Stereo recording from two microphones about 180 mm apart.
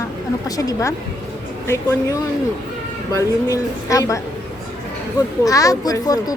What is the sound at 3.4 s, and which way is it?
Speech, 20° left (ahead or behind).